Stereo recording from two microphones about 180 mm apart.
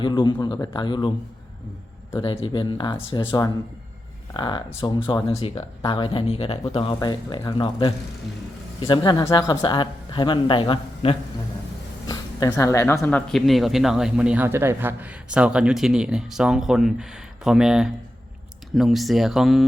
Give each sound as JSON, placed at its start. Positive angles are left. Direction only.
{"t": 0.0, "sound": "speech", "side_deg": 25}
{"t": 2.2, "sound": "speech", "side_deg": 25}
{"t": 12.0, "sound": "a sound", "side_deg": 20}
{"t": 13.0, "sound": "speech", "side_deg": 5}